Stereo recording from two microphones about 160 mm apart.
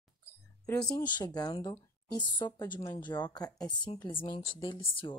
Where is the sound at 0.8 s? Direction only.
30° left (ahead or behind).